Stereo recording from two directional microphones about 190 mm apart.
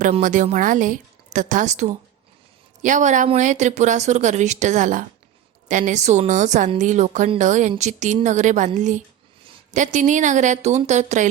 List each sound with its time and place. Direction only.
0.0 s a woman's voice: 45° right (ahead or behind)